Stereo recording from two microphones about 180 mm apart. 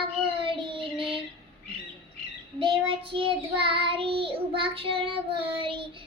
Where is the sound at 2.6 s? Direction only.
30° right (ahead or behind).